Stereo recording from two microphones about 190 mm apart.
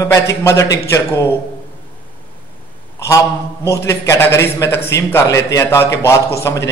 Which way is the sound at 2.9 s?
15° left (ahead or behind).